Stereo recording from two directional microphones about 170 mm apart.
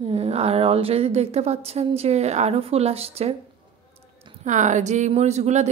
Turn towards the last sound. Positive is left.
turn(degrees=-40)  # may be behind; listen again after turning